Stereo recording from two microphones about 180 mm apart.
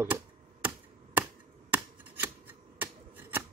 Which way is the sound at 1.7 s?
10° right (ahead or behind).